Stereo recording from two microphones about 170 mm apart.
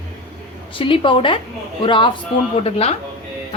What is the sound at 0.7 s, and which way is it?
A woman's voice, 30° left (ahead or behind).